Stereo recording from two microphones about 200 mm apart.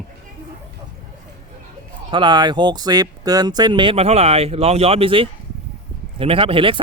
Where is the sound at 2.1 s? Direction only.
25° right (ahead or behind).